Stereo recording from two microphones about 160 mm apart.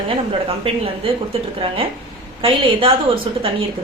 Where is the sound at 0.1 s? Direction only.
35° right (ahead or behind).